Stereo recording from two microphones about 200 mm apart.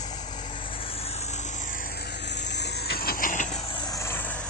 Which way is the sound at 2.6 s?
50° left (ahead or behind).